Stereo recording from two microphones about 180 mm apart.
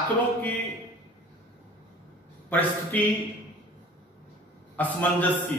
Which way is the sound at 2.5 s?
10° left (ahead or behind).